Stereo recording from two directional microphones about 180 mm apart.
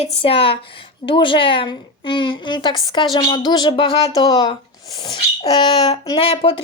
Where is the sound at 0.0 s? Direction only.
30° left (ahead or behind).